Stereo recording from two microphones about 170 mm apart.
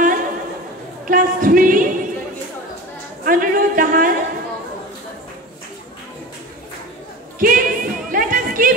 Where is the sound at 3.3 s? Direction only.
55° right (ahead or behind).